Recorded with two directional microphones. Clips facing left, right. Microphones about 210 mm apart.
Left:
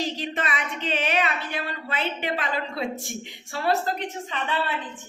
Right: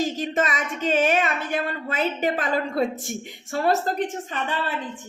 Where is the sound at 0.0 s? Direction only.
45° right (ahead or behind).